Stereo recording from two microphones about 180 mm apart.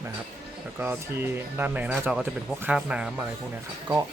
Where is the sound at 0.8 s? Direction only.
15° right (ahead or behind).